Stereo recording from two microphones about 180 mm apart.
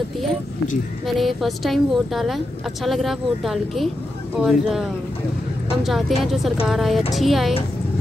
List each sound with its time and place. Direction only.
1.0 s speech: centre (ahead or behind)
5.9 s speech: centre (ahead or behind)